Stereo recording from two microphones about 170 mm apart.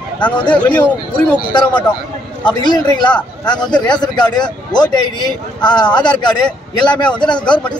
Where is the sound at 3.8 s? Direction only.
25° left (ahead or behind).